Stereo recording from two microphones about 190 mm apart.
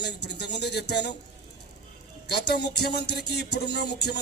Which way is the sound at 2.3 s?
60° left (ahead or behind).